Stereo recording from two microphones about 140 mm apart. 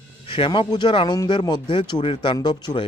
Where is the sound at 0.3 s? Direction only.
35° left (ahead or behind).